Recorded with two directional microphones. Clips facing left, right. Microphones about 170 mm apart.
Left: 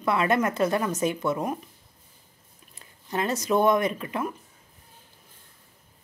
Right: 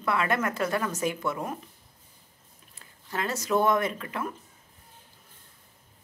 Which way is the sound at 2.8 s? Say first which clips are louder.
Left 4 dB; 20° left (ahead or behind).